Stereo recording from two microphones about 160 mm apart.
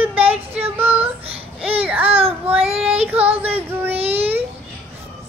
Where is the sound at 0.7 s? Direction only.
15° right (ahead or behind).